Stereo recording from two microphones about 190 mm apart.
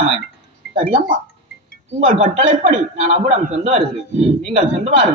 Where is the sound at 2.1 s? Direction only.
35° right (ahead or behind).